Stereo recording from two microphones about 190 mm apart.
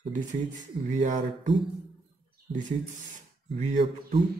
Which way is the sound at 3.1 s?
40° right (ahead or behind).